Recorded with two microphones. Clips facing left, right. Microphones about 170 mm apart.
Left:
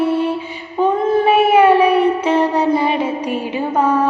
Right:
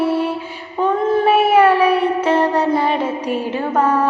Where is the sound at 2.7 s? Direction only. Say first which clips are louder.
Left 1 dB; 10° left (ahead or behind).